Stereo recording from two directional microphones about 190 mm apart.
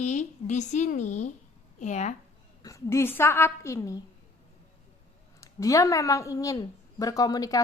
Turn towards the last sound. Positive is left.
turn(degrees=20)  # may be behind; listen again after turning